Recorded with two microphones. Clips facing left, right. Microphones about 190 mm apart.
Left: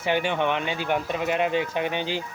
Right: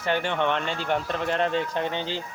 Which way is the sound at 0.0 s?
10° left (ahead or behind).